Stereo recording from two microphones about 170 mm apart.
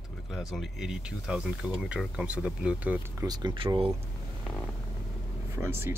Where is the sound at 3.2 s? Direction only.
30° right (ahead or behind).